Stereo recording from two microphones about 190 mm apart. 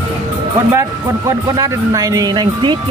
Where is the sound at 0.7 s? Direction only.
15° right (ahead or behind).